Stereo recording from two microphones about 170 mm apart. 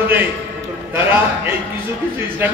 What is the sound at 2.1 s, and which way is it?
Speech, 10° right (ahead or behind).